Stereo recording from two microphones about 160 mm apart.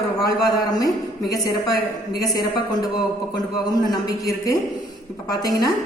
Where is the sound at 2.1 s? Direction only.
25° left (ahead or behind).